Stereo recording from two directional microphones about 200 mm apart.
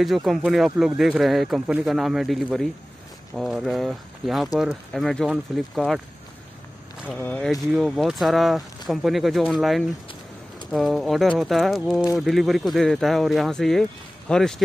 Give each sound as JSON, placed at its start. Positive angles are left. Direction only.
{"t": 0.0, "sound": "speech", "side_deg": 0}
{"t": 7.1, "sound": "speech", "side_deg": 5}